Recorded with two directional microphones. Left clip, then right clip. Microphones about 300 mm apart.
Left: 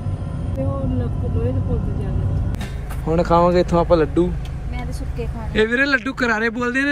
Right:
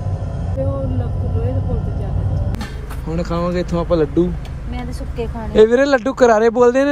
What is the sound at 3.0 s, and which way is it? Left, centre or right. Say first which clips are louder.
Speech: left 7 dB; centre.